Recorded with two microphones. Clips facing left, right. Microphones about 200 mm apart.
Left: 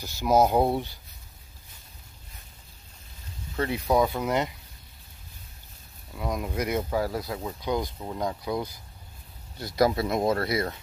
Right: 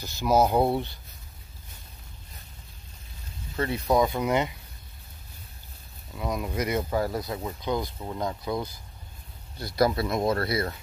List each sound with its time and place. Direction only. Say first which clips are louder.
0.0 s speech: left 1 dB; 15° left (ahead or behind)
3.6 s speech: even; 15° left (ahead or behind)
6.1 s speech: even; 10° left (ahead or behind)
7.6 s speech: left 1 dB; 15° left (ahead or behind)
9.8 s speech: left 1 dB; 20° left (ahead or behind)